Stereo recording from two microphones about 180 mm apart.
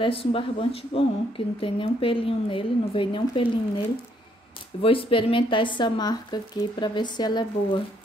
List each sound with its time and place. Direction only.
0.0 s speech: 30° left (ahead or behind)
4.8 s speech: 30° left (ahead or behind)